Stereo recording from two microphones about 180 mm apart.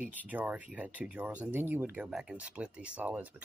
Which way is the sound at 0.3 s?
10° right (ahead or behind).